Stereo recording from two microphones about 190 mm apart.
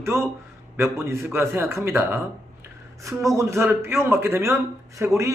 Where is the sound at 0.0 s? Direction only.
15° right (ahead or behind).